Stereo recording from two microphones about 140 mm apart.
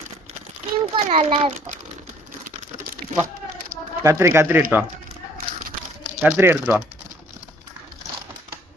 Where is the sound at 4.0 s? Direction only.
20° right (ahead or behind).